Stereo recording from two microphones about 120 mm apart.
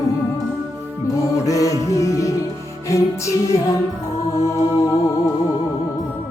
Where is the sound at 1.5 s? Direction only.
30° left (ahead or behind).